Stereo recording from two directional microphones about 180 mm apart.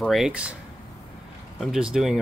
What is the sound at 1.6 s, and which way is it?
Speech, 5° right (ahead or behind).